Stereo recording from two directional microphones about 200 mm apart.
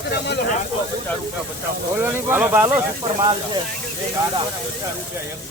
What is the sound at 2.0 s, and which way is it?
Speech, 10° right (ahead or behind).